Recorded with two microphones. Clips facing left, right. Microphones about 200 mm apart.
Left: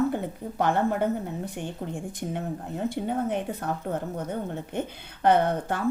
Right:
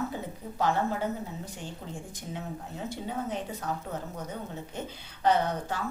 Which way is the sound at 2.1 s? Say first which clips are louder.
Left 6 dB; 55° left (ahead or behind).